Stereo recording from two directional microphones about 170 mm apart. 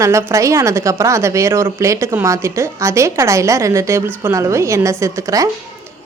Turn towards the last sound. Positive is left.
turn(degrees=-20)  # may be behind; listen again after turning